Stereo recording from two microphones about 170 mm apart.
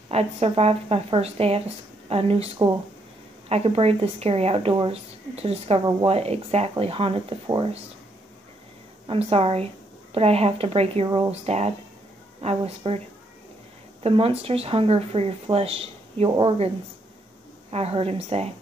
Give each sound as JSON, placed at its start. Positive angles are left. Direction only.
{"t": 0.1, "sound": "speech", "side_deg": -35}
{"t": 9.0, "sound": "speech", "side_deg": -35}
{"t": 14.0, "sound": "speech", "side_deg": -35}